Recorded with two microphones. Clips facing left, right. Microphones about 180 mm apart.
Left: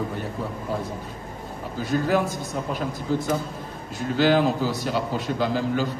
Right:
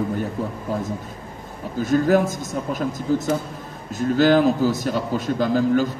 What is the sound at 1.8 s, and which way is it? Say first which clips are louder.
A man's voice: right 5 dB; 45° right (ahead or behind).